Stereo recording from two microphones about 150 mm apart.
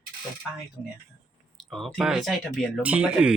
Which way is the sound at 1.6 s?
Centre (ahead or behind).